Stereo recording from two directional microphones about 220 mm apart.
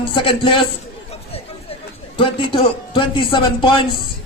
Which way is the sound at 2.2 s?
25° left (ahead or behind).